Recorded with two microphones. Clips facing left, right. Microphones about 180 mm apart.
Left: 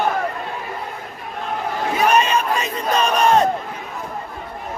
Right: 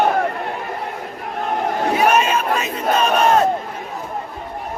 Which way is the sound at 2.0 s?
10° right (ahead or behind).